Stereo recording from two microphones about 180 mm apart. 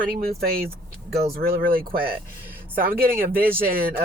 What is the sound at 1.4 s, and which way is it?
Speech, 55° right (ahead or behind).